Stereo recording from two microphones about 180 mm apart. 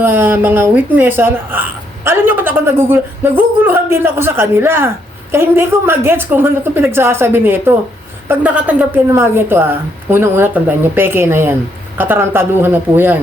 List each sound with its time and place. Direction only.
0.0 s a woman's voice: 10° right (ahead or behind)